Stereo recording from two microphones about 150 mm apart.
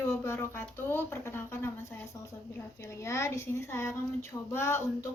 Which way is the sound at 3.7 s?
15° left (ahead or behind).